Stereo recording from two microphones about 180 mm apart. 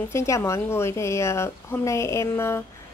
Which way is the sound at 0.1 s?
15° left (ahead or behind).